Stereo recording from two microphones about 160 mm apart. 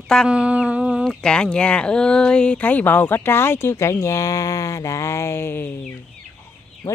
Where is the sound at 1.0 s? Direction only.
5° left (ahead or behind).